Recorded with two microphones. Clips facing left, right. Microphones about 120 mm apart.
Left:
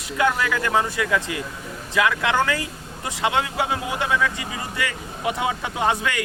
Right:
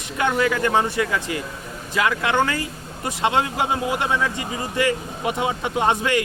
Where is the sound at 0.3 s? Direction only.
25° right (ahead or behind).